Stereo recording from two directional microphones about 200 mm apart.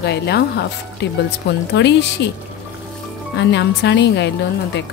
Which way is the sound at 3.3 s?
60° left (ahead or behind).